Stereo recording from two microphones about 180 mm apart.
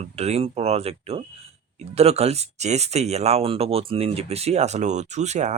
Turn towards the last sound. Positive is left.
turn(degrees=-40)  # may be behind; listen again after turning